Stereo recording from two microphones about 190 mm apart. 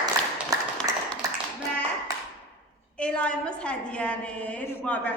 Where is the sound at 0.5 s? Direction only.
20° right (ahead or behind).